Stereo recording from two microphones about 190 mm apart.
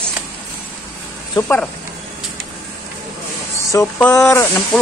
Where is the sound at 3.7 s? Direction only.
15° left (ahead or behind).